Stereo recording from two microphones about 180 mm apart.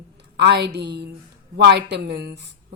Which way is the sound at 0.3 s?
70° right (ahead or behind).